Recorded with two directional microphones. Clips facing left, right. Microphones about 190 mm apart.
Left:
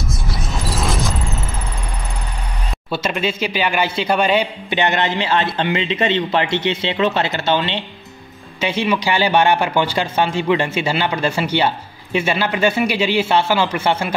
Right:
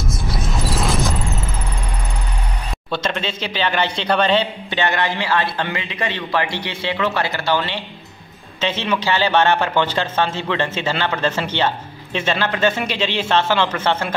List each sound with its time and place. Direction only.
0.7 s vehicle: centre (ahead or behind)
2.9 s a man's voice: 10° left (ahead or behind)